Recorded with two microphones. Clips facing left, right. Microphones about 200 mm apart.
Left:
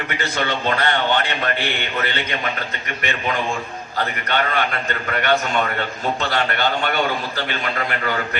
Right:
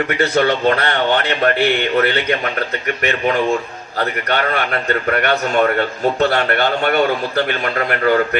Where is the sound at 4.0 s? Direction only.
40° right (ahead or behind).